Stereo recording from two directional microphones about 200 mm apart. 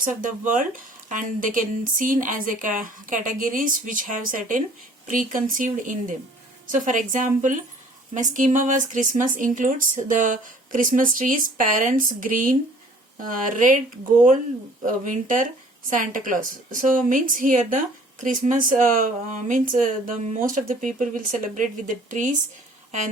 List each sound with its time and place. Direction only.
0.0 s a woman's voice: 40° right (ahead or behind)
14.8 s a woman's voice: 40° right (ahead or behind)